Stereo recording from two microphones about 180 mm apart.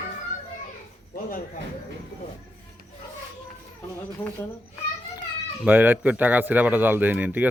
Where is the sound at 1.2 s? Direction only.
50° left (ahead or behind).